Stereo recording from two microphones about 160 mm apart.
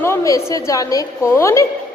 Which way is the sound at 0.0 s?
15° left (ahead or behind).